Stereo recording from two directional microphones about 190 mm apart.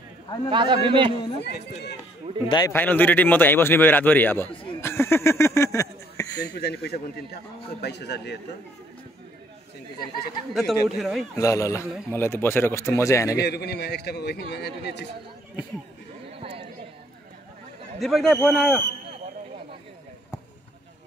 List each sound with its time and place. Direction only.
0.5 s a man's voice: 25° right (ahead or behind)
1.4 s a man's voice: 60° left (ahead or behind)
2.4 s a man's voice: 25° left (ahead or behind)
2.7 s a man's voice: 10° left (ahead or behind)
4.8 s a sound: 15° left (ahead or behind)
6.6 s a man's voice: 60° left (ahead or behind)
10.5 s a man's voice: centre (ahead or behind)
11.3 s a man's voice: 15° left (ahead or behind)
13.4 s a man's voice: 60° left (ahead or behind)
18.0 s a man's voice: centre (ahead or behind)